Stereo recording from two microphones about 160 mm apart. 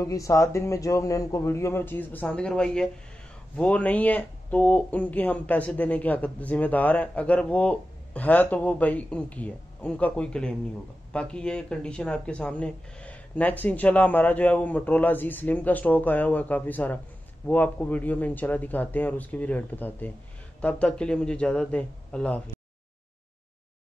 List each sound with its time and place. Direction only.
0.0 s speech: 20° left (ahead or behind)